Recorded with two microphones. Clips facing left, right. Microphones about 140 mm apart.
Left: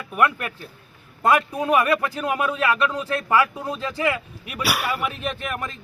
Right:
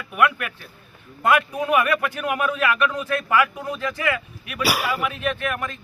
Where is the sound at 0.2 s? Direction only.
30° left (ahead or behind).